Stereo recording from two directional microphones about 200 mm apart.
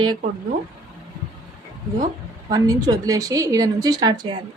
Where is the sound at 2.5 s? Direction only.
20° right (ahead or behind).